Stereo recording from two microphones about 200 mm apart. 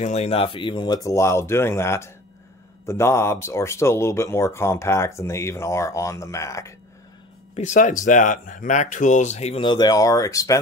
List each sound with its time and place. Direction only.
0.0 s speech: 30° left (ahead or behind); by 6.7 s 15° left (ahead or behind)
7.5 s speech: 35° left (ahead or behind); by 10.6 s 15° left (ahead or behind)